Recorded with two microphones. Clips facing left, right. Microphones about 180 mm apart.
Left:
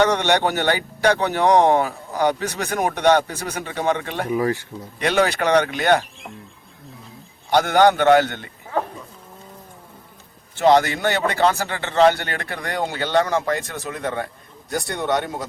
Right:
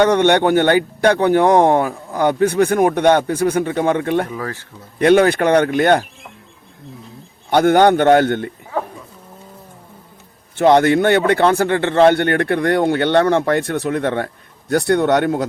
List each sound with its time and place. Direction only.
0.1 s speech: 55° right (ahead or behind)
4.3 s speech: 15° left (ahead or behind)
4.9 s speech: 50° right (ahead or behind)
7.5 s speech: 55° right (ahead or behind)
10.5 s speech: 55° right (ahead or behind)